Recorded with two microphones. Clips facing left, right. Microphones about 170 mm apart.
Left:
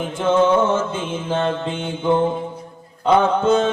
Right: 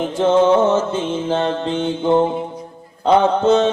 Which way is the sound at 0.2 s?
50° right (ahead or behind).